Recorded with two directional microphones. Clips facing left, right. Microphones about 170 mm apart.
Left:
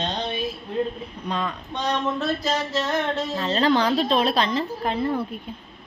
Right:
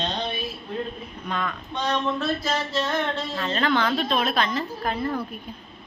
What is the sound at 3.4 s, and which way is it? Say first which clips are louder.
A woman's voice: left 3 dB; 35° left (ahead or behind).